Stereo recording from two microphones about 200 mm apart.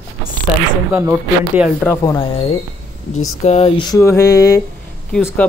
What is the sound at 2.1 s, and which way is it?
Speech, 25° left (ahead or behind).